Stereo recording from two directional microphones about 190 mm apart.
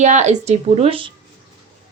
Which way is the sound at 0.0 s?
40° right (ahead or behind).